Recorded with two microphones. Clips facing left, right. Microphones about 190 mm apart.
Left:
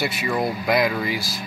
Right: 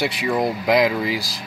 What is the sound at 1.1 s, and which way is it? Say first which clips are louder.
Speech: right 2 dB; 90° right.